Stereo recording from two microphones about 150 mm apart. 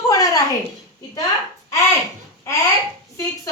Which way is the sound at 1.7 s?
20° left (ahead or behind).